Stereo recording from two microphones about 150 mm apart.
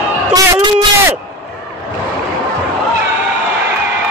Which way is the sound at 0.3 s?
25° right (ahead or behind).